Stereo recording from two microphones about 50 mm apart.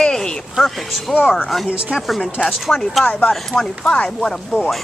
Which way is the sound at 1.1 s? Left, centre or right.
Centre.